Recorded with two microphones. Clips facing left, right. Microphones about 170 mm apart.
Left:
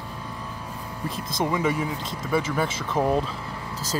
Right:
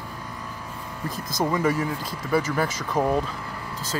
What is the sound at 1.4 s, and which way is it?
Speech, centre (ahead or behind).